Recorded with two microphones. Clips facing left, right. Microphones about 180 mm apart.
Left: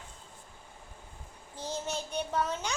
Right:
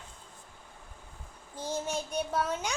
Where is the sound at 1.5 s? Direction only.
10° right (ahead or behind).